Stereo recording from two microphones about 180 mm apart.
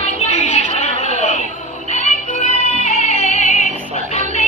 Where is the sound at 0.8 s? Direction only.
40° left (ahead or behind).